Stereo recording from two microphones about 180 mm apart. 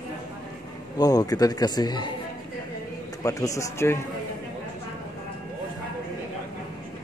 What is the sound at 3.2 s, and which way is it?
Speech, 20° left (ahead or behind).